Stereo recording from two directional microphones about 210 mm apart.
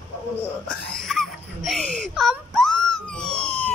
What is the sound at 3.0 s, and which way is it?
Police car, 5° left (ahead or behind).